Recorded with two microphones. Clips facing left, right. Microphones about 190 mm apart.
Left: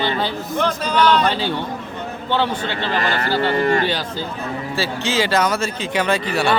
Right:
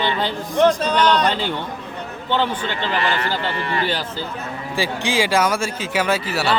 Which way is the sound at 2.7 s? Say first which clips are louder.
Even; 45° left (ahead or behind).